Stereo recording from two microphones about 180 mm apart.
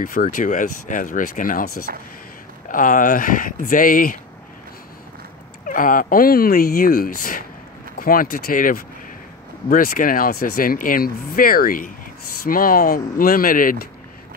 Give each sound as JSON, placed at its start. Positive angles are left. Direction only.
{"t": 0.0, "sound": "speech", "side_deg": 50}
{"t": 2.7, "sound": "speech", "side_deg": 45}
{"t": 5.7, "sound": "speech", "side_deg": 50}